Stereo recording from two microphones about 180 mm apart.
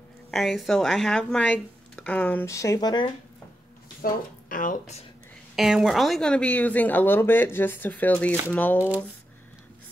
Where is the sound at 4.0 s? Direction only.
50° left (ahead or behind).